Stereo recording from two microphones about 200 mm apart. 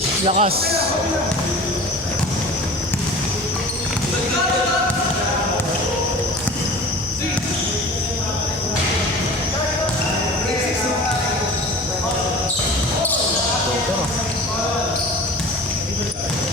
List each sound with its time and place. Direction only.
0.3 s speech: 30° right (ahead or behind)